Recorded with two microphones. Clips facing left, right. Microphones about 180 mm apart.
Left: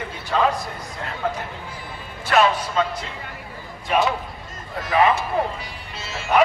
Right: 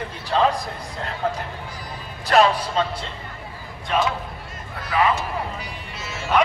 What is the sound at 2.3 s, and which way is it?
Music, 30° right (ahead or behind).